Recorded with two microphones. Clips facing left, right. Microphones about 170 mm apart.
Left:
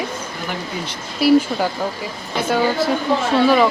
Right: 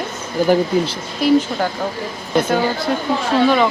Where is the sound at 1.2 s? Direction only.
10° left (ahead or behind).